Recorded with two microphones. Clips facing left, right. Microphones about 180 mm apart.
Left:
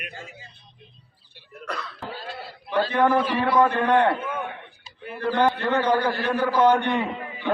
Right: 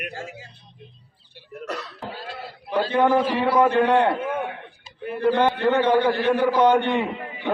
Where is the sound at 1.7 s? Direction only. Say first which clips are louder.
Right 1 dB; 40° right (ahead or behind).